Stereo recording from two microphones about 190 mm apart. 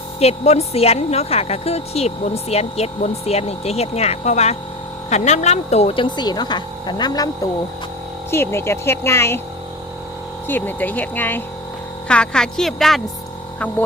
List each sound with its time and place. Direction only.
0.2 s a woman's voice: 35° left (ahead or behind)
8.3 s speech: 15° left (ahead or behind)
10.5 s a woman's voice: 10° left (ahead or behind)